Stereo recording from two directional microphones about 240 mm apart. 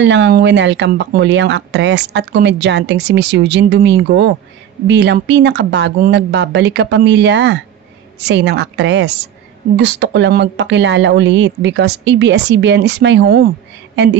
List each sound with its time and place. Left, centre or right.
0.0 s speech: right